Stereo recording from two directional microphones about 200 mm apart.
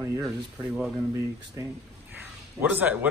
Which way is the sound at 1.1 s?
15° right (ahead or behind).